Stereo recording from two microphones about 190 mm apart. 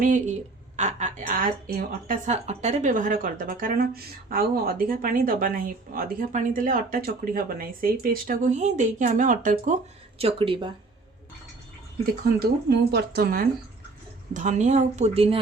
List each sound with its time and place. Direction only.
0.0 s speech: 45° right (ahead or behind)
10.2 s speech: 30° right (ahead or behind)
12.4 s speech: 55° right (ahead or behind)
14.3 s a woman's voice: 40° right (ahead or behind)